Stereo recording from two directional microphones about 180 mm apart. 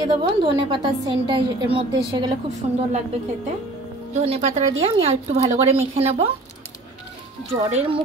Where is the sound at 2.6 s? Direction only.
35° right (ahead or behind).